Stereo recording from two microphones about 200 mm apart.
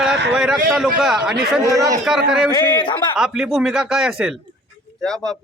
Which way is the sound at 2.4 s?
20° left (ahead or behind).